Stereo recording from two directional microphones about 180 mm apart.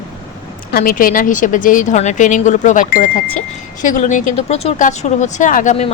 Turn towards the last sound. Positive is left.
turn(degrees=45)  # may be behind; listen again after turning